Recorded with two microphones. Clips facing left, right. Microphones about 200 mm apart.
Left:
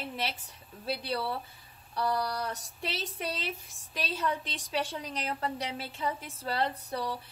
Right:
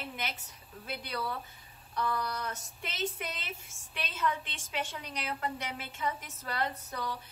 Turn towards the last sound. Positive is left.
turn(degrees=35)  # may be behind; listen again after turning